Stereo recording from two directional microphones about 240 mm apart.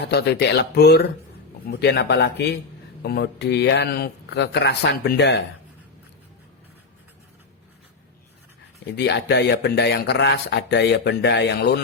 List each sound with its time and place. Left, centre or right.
0.0 s speech: left
9.0 s speech: left